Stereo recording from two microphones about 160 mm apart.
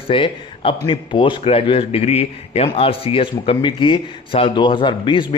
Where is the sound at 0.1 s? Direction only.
35° left (ahead or behind).